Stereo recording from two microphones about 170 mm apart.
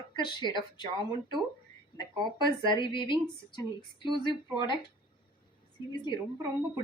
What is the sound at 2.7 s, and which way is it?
Speech, 25° left (ahead or behind).